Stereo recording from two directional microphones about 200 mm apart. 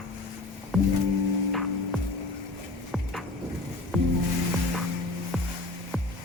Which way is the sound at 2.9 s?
Centre (ahead or behind).